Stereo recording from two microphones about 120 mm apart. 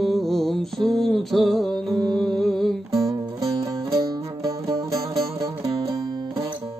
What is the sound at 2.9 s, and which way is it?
Music, 25° right (ahead or behind).